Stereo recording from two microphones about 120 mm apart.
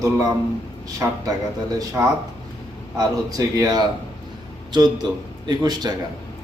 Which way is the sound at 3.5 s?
30° right (ahead or behind).